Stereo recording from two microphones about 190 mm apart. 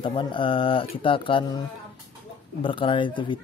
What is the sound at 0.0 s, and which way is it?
Speech, 25° left (ahead or behind).